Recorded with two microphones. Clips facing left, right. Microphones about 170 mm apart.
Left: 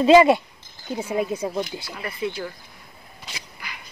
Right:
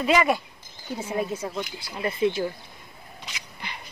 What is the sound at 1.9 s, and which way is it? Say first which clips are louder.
Speech: right 5 dB; 25° right (ahead or behind).